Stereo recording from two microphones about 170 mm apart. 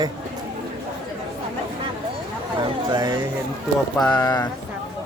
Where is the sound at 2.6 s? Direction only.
20° right (ahead or behind).